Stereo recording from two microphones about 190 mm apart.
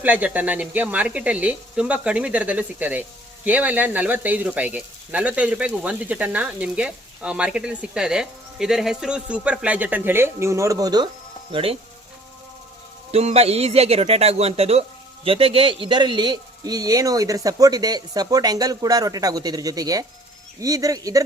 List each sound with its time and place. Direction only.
0.0 s speech: 10° right (ahead or behind); by 11.8 s 30° right (ahead or behind)
13.1 s speech: 35° right (ahead or behind); by 21.2 s 20° right (ahead or behind)